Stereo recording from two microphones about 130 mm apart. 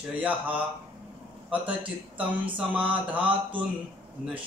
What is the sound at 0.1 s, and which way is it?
Speech, 10° right (ahead or behind).